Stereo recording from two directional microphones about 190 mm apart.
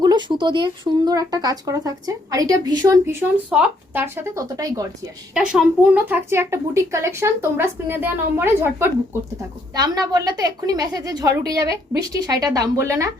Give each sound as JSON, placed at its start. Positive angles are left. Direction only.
{"t": 0.0, "sound": "speech", "side_deg": -20}
{"t": 5.3, "sound": "speech", "side_deg": -5}